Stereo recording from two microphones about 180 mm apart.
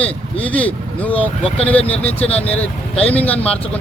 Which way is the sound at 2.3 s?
10° left (ahead or behind).